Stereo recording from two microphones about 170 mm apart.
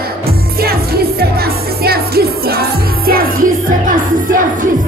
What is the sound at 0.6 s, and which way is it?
Music, 65° right (ahead or behind).